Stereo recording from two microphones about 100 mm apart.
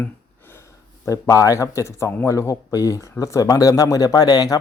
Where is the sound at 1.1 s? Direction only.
35° left (ahead or behind).